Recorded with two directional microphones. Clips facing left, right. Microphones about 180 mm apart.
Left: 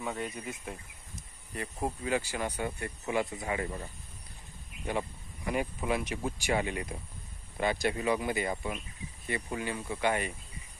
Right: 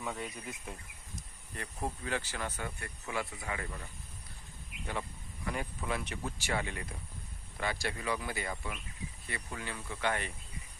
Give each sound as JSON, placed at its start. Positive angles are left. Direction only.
{"t": 0.0, "sound": "speech", "side_deg": 0}